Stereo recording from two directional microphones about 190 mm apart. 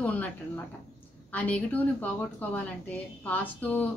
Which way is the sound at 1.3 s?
10° left (ahead or behind).